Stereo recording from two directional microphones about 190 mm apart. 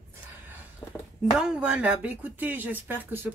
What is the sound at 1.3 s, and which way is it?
Speech, 5° right (ahead or behind).